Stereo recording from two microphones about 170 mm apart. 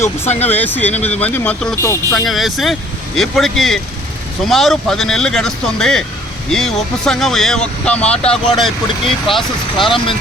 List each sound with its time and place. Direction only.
0.3 s speech: 40° left (ahead or behind)
0.5 s speech: 10° left (ahead or behind)
0.9 s speech: 40° left (ahead or behind)
1.2 s speech: 10° left (ahead or behind)
2.1 s speech: centre (ahead or behind)
9.7 s speech: 30° left (ahead or behind)